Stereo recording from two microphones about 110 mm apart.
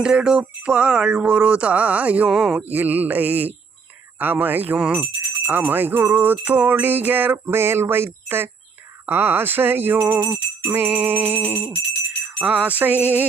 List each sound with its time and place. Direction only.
0.0 s music: 10° right (ahead or behind)
2.3 s speech: centre (ahead or behind)
2.6 s music: 15° right (ahead or behind)
9.0 s speech: 20° right (ahead or behind)
12.4 s music: 15° right (ahead or behind)